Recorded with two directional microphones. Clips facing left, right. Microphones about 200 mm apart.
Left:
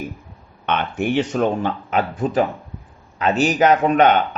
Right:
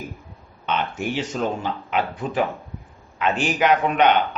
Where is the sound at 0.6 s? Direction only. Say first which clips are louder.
Left 3 dB; 60° left (ahead or behind).